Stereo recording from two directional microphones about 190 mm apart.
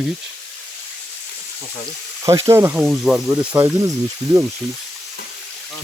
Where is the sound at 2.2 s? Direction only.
15° right (ahead or behind).